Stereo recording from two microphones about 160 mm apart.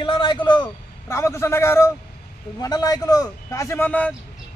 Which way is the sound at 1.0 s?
15° left (ahead or behind).